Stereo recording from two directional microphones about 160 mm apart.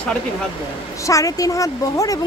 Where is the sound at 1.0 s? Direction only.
20° left (ahead or behind).